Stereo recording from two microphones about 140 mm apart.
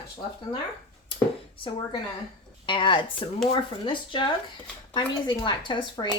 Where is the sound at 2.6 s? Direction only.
35° left (ahead or behind).